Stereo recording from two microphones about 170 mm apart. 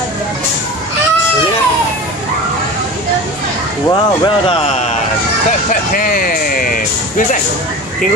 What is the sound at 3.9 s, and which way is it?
Speech, 30° left (ahead or behind).